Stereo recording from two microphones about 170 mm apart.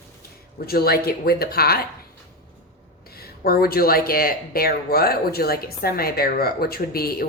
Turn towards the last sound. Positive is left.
turn(degrees=65)  # may be behind; listen again after turning